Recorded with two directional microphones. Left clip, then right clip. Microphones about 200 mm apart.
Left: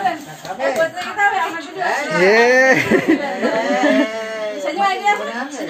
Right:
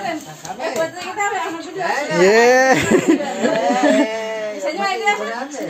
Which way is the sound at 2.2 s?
15° right (ahead or behind).